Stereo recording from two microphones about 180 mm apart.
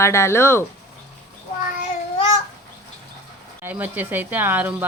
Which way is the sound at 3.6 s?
10° right (ahead or behind).